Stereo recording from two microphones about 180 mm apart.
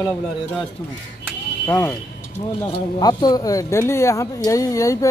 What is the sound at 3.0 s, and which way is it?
Speech, 25° left (ahead or behind).